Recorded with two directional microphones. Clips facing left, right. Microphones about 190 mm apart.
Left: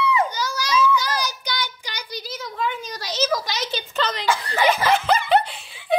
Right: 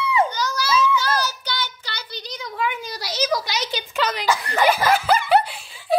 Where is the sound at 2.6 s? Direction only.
10° right (ahead or behind).